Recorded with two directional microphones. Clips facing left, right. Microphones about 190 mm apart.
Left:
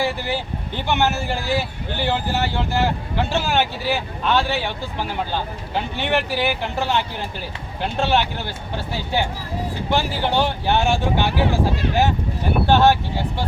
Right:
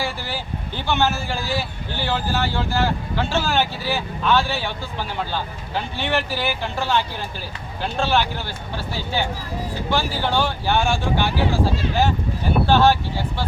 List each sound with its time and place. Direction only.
0.9 s speech: 20° left (ahead or behind)
9.9 s speech: 20° left (ahead or behind)